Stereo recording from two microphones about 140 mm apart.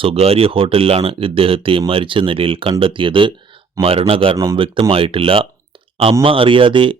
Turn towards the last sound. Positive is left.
turn(degrees=-35)  # may be behind; listen again after turning